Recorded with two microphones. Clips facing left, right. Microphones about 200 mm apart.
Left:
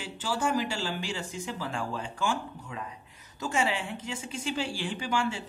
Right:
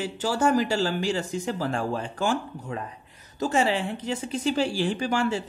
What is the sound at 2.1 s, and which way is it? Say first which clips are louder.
Speech: right 5 dB; 40° right (ahead or behind).